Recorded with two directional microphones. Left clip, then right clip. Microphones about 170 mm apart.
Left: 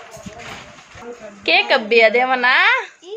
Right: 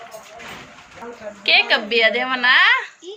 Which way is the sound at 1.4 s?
60° left (ahead or behind).